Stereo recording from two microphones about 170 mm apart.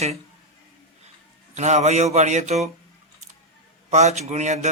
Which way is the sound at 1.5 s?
40° right (ahead or behind).